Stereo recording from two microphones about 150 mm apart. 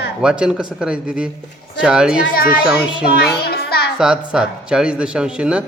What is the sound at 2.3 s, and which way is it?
Speech, 75° left (ahead or behind).